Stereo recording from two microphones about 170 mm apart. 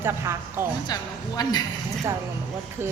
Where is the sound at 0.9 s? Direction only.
20° left (ahead or behind).